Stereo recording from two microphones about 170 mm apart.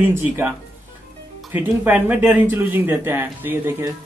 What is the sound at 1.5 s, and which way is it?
Speech, 10° right (ahead or behind).